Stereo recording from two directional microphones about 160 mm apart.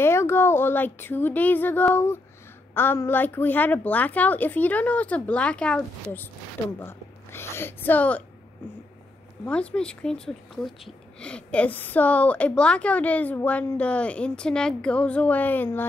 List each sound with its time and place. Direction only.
0.0 s a woman's voice: 15° left (ahead or behind)
9.4 s a woman's voice: 10° left (ahead or behind)